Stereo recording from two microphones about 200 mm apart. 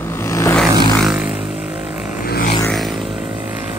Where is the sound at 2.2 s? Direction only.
50° left (ahead or behind).